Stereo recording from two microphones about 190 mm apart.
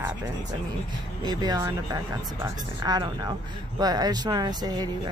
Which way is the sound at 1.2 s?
20° right (ahead or behind).